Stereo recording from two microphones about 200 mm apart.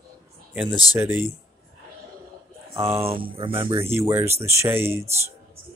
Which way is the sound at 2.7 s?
10° right (ahead or behind).